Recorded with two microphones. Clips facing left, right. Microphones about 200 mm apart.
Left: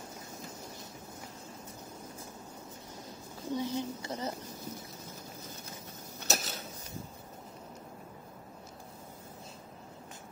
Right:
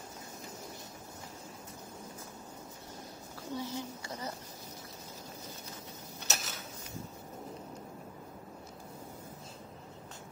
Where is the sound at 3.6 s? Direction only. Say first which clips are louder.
Left 5 dB; 20° left (ahead or behind).